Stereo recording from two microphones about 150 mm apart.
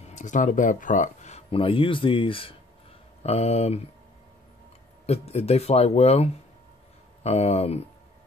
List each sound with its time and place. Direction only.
0.0 s speech: 55° left (ahead or behind)
5.0 s speech: 45° left (ahead or behind)